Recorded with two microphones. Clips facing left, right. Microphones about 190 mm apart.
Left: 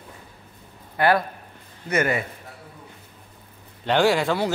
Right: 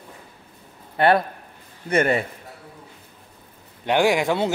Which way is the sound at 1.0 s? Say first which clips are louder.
Right 2 dB; 25° right (ahead or behind).